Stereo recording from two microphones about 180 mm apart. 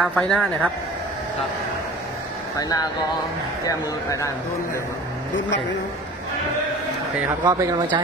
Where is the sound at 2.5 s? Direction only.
20° left (ahead or behind).